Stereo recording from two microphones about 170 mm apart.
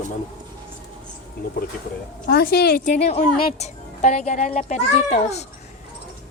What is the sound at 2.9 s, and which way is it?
A child's voice, 40° left (ahead or behind).